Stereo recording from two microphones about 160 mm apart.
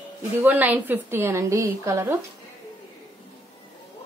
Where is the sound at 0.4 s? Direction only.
10° right (ahead or behind).